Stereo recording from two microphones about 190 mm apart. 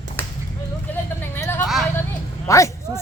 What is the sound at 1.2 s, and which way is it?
Vehicle, 10° left (ahead or behind).